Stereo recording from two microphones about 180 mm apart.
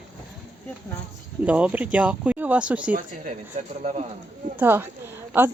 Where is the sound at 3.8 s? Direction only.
40° right (ahead or behind).